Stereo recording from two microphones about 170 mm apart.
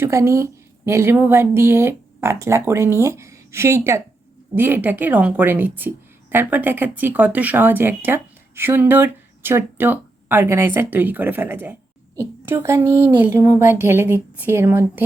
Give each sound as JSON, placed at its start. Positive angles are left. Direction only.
{"t": 0.0, "sound": "a woman's voice", "side_deg": -15}